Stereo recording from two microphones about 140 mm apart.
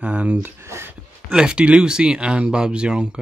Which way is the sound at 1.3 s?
5° right (ahead or behind).